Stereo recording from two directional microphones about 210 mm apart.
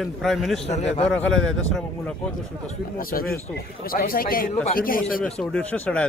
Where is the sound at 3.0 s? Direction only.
45° left (ahead or behind).